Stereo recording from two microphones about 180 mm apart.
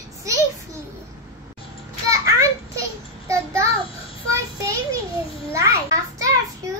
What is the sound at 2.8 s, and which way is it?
Child singing, 15° right (ahead or behind).